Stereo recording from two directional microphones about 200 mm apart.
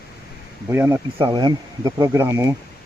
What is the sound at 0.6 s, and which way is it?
Speech, 10° right (ahead or behind).